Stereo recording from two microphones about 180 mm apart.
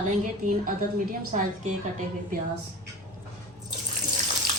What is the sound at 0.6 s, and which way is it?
Speech, 50° right (ahead or behind).